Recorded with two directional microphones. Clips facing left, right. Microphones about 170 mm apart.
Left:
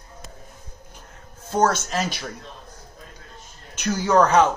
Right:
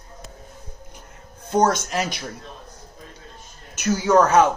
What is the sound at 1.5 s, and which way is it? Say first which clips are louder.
Speech: right 1 dB; 15° right (ahead or behind).